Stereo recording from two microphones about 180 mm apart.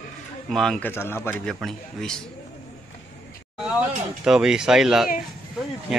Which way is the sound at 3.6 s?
5° right (ahead or behind).